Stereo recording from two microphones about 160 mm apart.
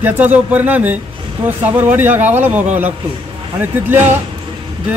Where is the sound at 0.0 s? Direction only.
10° right (ahead or behind).